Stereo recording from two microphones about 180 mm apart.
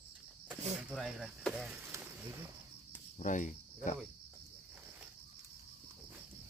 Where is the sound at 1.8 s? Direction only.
15° right (ahead or behind).